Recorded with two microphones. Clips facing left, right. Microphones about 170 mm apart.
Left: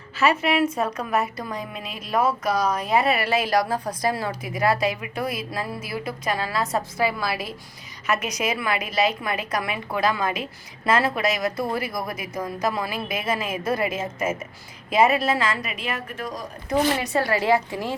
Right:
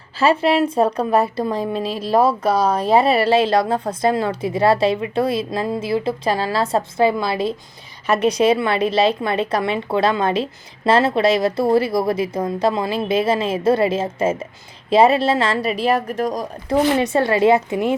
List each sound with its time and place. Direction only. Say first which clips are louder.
0.2 s a woman's voice: right 5 dB; 30° right (ahead or behind)
17.0 s a woman's voice: right 7 dB; 25° right (ahead or behind)